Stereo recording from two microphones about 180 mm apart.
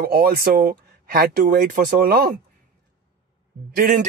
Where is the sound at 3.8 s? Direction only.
45° right (ahead or behind).